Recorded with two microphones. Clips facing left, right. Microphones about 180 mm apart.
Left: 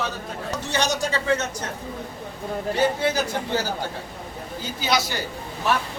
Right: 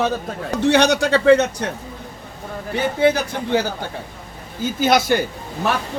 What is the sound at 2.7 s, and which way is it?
Speech, 55° right (ahead or behind).